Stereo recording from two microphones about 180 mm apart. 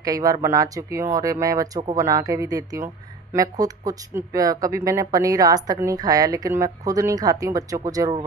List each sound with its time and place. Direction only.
0.0 s speech: 20° right (ahead or behind)